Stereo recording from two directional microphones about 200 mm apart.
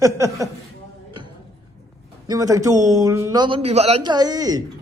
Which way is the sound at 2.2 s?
20° right (ahead or behind).